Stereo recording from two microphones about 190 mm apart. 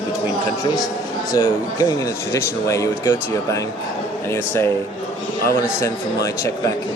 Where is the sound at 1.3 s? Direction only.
20° left (ahead or behind).